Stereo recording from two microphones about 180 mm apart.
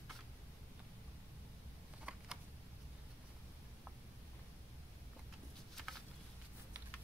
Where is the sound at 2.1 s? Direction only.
5° right (ahead or behind).